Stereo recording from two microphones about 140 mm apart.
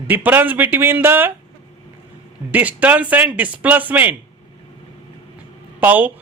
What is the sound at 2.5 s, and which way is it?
A man's voice, 10° right (ahead or behind).